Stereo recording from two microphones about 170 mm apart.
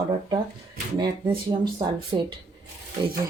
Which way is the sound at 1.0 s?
25° right (ahead or behind).